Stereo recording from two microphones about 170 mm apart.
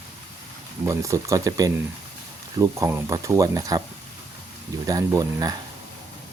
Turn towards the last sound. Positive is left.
turn(degrees=-20)  # may be behind; listen again after turning